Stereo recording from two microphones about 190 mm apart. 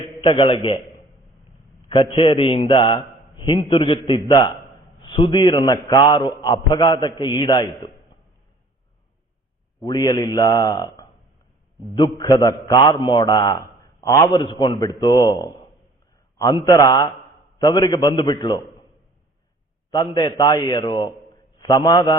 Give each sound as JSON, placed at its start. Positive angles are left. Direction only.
{"t": 0.2, "sound": "a man's voice", "side_deg": 30}
{"t": 1.9, "sound": "a man's voice", "side_deg": 25}
{"t": 9.8, "sound": "a man's voice", "side_deg": 20}
{"t": 16.6, "sound": "a man's voice", "side_deg": 20}
{"t": 19.9, "sound": "a man's voice", "side_deg": 20}